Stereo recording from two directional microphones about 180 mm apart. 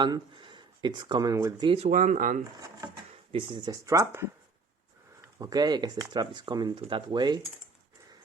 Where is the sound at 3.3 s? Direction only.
30° right (ahead or behind).